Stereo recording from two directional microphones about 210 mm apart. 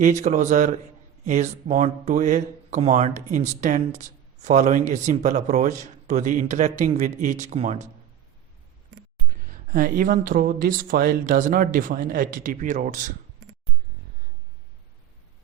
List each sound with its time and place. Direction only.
0.0 s speech: 35° right (ahead or behind)
9.5 s speech: 40° right (ahead or behind)